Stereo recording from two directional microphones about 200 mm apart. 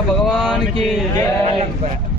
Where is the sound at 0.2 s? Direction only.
Centre (ahead or behind).